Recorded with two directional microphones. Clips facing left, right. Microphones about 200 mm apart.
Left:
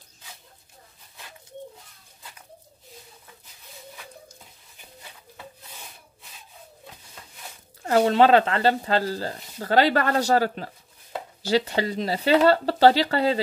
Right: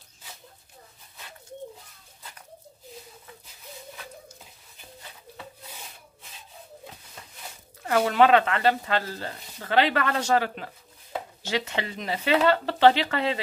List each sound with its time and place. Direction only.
7.8 s speech: 30° left (ahead or behind)